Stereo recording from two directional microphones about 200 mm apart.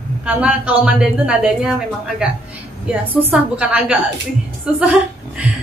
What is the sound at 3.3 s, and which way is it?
A man's voice, 5° right (ahead or behind).